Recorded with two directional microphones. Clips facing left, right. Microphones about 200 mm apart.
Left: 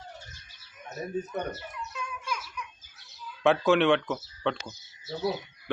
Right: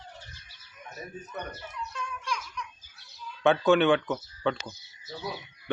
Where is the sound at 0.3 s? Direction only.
45° left (ahead or behind).